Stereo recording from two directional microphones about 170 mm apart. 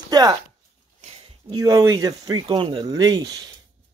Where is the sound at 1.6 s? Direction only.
20° right (ahead or behind).